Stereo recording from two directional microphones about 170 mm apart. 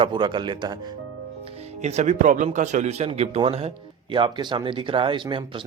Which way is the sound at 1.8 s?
40° right (ahead or behind).